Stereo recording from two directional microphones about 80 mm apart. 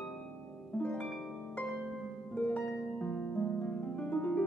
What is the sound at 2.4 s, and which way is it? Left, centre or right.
Harp, centre.